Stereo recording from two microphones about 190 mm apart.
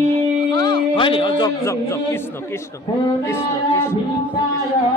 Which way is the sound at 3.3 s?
10° left (ahead or behind).